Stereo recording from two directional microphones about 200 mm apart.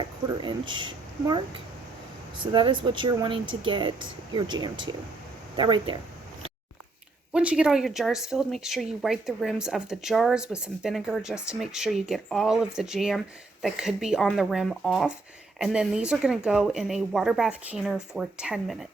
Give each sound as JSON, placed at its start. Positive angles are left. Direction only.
{"t": 0.3, "sound": "speech", "side_deg": -25}
{"t": 2.4, "sound": "speech", "side_deg": -25}
{"t": 7.3, "sound": "speech", "side_deg": -5}